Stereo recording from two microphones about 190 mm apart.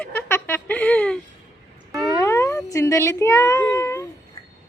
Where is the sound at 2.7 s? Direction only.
15° left (ahead or behind).